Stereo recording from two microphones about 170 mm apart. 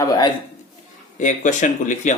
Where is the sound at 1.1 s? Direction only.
50° left (ahead or behind).